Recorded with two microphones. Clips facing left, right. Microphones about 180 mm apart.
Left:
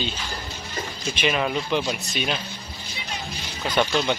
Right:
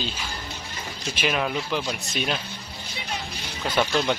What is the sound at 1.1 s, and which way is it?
Speech, centre (ahead or behind).